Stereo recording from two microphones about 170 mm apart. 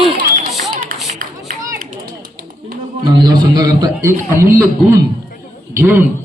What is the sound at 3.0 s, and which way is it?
A man's voice, 25° right (ahead or behind).